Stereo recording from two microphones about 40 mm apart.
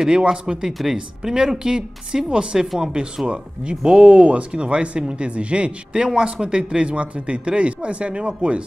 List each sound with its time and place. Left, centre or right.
0.1 s speech: right